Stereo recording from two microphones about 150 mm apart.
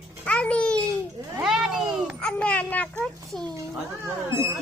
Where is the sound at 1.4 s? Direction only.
Centre (ahead or behind).